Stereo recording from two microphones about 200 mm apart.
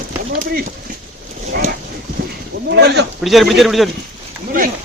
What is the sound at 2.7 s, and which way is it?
Speech, 55° right (ahead or behind).